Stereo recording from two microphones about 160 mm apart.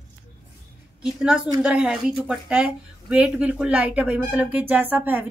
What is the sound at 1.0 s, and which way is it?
A woman's voice, 5° right (ahead or behind).